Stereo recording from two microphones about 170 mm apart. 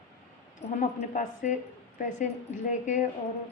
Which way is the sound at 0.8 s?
50° left (ahead or behind).